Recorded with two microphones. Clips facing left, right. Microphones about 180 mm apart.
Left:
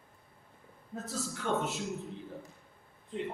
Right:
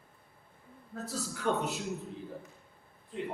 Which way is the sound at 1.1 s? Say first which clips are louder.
Right 1 dB; 40° right (ahead or behind).